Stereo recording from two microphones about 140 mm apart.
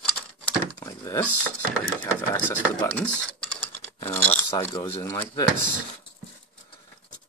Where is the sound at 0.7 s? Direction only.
25° left (ahead or behind).